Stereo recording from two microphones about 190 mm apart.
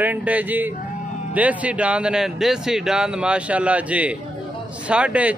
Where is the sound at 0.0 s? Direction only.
10° right (ahead or behind).